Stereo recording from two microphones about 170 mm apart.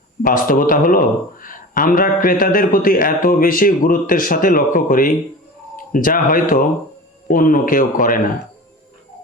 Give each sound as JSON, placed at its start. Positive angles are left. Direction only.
{"t": 0.2, "sound": "a man's voice", "side_deg": 55}